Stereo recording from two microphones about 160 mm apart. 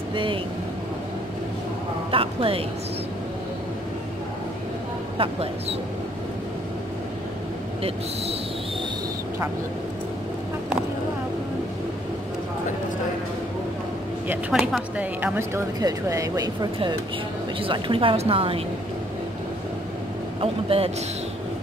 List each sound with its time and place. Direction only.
0.1 s speech: 30° right (ahead or behind)
2.0 s speech: 35° right (ahead or behind)
5.1 s a woman's voice: 35° right (ahead or behind)
14.2 s a woman's voice: 10° right (ahead or behind)
15.3 s speech: 20° right (ahead or behind)
17.6 s a woman's voice: 35° right (ahead or behind)
20.3 s a woman's voice: 40° right (ahead or behind)